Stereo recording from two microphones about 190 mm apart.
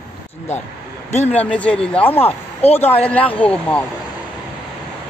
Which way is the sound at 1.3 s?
5° left (ahead or behind).